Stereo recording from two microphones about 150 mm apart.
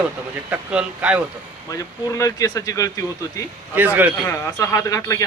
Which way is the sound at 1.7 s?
25° left (ahead or behind).